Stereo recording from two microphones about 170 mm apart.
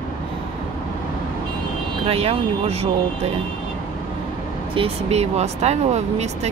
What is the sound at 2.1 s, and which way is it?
Speech, 35° right (ahead or behind).